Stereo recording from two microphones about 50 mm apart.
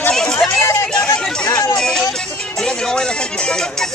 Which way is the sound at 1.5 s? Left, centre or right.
Left.